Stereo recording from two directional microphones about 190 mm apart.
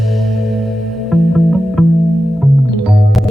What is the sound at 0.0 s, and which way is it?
Music, centre (ahead or behind).